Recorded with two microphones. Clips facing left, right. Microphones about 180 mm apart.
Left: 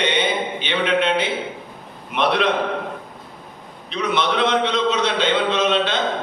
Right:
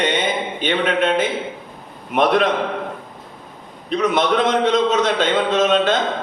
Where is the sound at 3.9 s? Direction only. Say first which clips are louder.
Right 4 dB; 45° right (ahead or behind).